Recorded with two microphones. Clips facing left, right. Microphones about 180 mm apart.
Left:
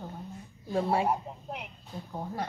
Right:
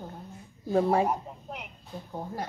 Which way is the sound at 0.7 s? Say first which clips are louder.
Right 4 dB; 45° right (ahead or behind).